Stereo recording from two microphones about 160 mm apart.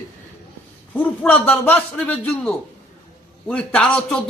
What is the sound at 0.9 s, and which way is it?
Speech, 10° left (ahead or behind).